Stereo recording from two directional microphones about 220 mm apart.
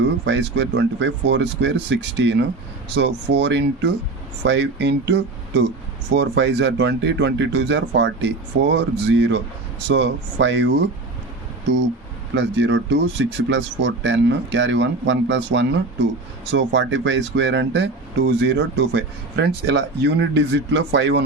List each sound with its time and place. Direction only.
0.3 s speech: 55° right (ahead or behind)
12.3 s speech: 55° right (ahead or behind)